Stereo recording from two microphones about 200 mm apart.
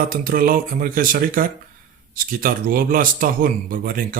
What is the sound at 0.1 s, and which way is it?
Speech, 45° right (ahead or behind).